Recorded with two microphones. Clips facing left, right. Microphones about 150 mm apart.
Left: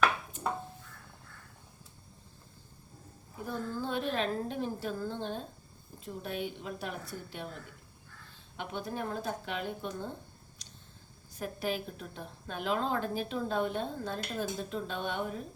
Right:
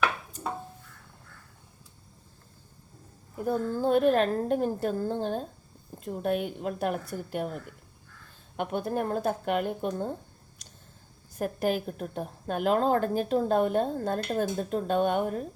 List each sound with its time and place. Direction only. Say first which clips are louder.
3.5 s a woman's voice: right 10 dB; 45° right (ahead or behind)
8.5 s a woman's voice: right 8 dB; 50° right (ahead or behind)
11.3 s a woman's voice: right 7 dB; 50° right (ahead or behind)